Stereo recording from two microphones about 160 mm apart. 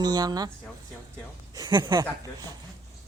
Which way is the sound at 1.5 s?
30° right (ahead or behind).